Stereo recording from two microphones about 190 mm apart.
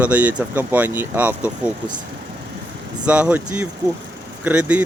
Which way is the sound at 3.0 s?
5° right (ahead or behind).